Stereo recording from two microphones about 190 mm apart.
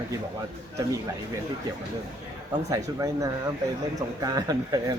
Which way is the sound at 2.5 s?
15° right (ahead or behind).